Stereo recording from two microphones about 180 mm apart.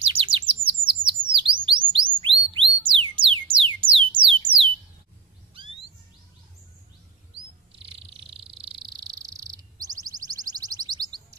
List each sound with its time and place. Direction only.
0.0 s chirp: 30° right (ahead or behind)
2.1 s music: 30° right (ahead or behind)
5.5 s chirp: 30° right (ahead or behind)
7.7 s frog: 30° right (ahead or behind)